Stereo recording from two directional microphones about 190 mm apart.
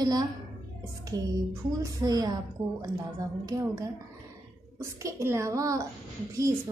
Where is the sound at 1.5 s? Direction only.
20° right (ahead or behind).